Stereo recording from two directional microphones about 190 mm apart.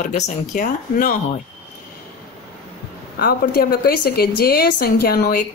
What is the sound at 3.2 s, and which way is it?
A woman's voice, 50° left (ahead or behind).